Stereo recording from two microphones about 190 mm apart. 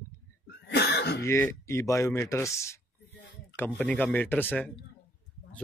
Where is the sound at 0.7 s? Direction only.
60° left (ahead or behind).